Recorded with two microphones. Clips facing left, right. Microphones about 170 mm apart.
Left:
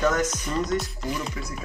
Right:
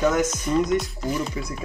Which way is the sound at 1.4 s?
20° right (ahead or behind).